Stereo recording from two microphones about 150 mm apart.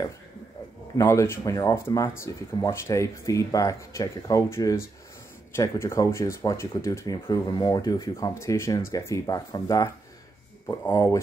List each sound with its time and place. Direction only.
0.9 s speech: 15° left (ahead or behind)